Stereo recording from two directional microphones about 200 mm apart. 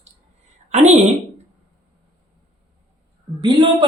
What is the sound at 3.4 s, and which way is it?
Speech, 20° right (ahead or behind).